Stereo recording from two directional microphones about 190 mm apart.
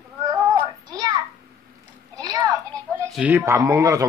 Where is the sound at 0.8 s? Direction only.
20° right (ahead or behind).